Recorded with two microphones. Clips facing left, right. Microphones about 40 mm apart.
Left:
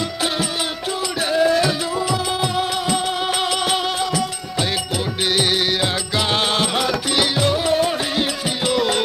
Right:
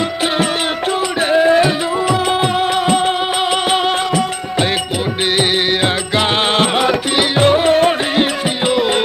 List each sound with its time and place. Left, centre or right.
1.3 s music: right
6.1 s music: right
8.6 s music: right